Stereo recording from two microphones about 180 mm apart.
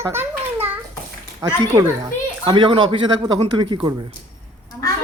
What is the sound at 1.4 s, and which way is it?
A man's voice, 20° right (ahead or behind).